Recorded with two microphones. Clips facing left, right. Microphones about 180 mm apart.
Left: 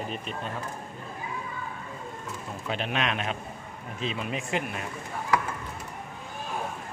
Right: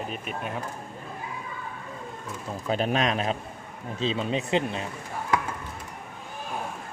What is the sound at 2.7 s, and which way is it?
A man's voice, 40° right (ahead or behind).